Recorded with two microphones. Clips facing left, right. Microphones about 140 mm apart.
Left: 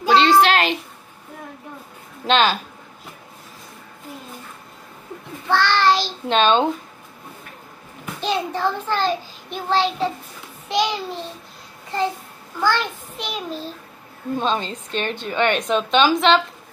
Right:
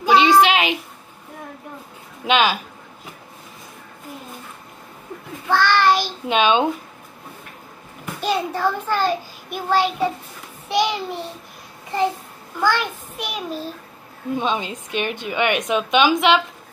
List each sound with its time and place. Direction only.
0.0 s a sound: 10° right (ahead or behind)
2.2 s speech: 10° right (ahead or behind)
5.5 s a child's voice: 10° right (ahead or behind)
8.0 s a child's voice: 5° right (ahead or behind)
12.5 s speech: 10° right (ahead or behind)